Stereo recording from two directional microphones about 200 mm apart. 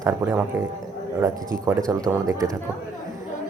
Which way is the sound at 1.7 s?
15° right (ahead or behind).